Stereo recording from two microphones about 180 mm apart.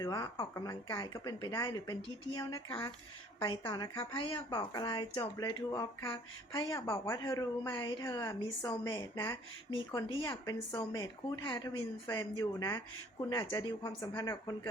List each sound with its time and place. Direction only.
0.0 s a woman's voice: 20° left (ahead or behind)